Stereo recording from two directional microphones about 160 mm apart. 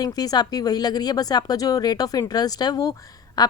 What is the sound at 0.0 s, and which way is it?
Speech, 25° left (ahead or behind).